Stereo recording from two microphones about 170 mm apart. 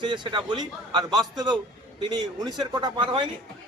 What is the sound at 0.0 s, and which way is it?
A man's voice, 25° right (ahead or behind).